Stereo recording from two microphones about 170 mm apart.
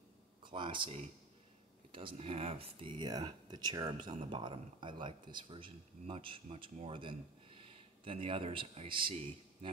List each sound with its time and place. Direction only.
0.4 s a man's voice: 30° right (ahead or behind)